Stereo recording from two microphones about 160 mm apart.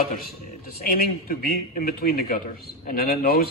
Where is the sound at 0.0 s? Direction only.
65° left (ahead or behind).